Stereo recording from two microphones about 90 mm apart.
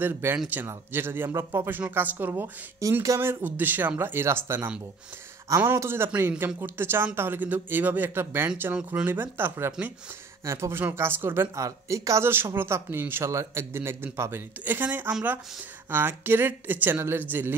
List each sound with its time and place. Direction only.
0.0 s a man's voice: 25° right (ahead or behind)
2.8 s speech: 35° right (ahead or behind)
3.4 s a man's voice: 20° right (ahead or behind)